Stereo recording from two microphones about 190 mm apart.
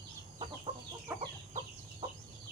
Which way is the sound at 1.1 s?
10° right (ahead or behind).